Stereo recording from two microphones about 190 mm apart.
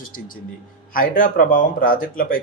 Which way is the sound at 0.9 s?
50° left (ahead or behind).